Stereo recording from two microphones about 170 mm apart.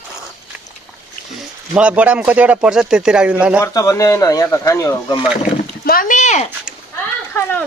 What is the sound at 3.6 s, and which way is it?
Speech, 20° left (ahead or behind).